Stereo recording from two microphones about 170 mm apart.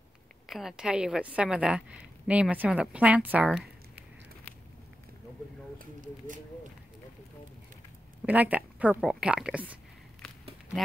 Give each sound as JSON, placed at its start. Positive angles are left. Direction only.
{"t": 0.5, "sound": "a woman's voice", "side_deg": 0}
{"t": 5.8, "sound": "speech", "side_deg": -50}
{"t": 8.3, "sound": "a woman's voice", "side_deg": -10}
{"t": 10.2, "sound": "a sound", "side_deg": 5}